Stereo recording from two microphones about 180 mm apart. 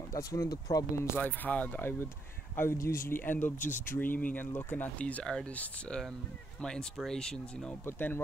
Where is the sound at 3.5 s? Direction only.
45° left (ahead or behind).